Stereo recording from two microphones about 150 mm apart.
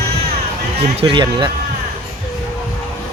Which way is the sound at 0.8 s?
35° right (ahead or behind).